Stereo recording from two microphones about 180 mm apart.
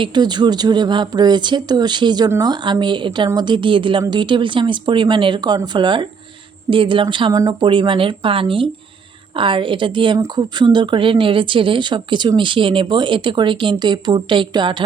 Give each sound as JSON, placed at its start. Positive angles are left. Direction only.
{"t": 0.0, "sound": "a woman's voice", "side_deg": -25}